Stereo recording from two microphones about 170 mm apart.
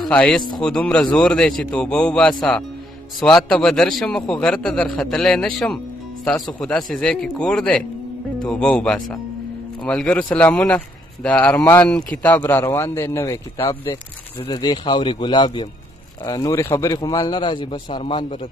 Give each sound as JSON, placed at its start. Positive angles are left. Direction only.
{"t": 0.1, "sound": "a man's voice", "side_deg": 5}
{"t": 11.5, "sound": "a man's voice", "side_deg": 20}
{"t": 11.8, "sound": "speech", "side_deg": 5}
{"t": 14.4, "sound": "a man's voice", "side_deg": 25}